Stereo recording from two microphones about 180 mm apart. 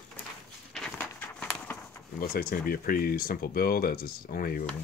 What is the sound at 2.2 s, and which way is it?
Speech, 55° left (ahead or behind).